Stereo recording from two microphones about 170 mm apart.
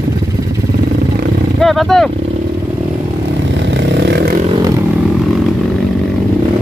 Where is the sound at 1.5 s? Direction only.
Centre (ahead or behind).